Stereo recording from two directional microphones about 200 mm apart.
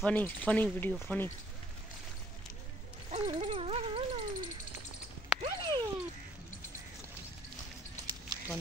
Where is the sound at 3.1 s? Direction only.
30° right (ahead or behind).